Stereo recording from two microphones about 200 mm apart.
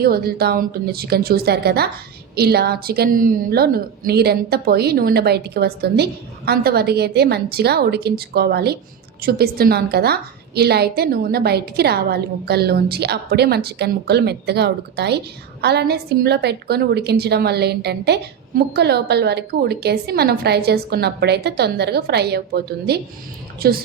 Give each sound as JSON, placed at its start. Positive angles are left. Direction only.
{"t": 0.0, "sound": "a woman's voice", "side_deg": -50}